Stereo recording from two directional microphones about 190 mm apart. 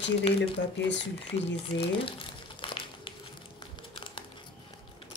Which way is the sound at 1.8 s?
30° left (ahead or behind).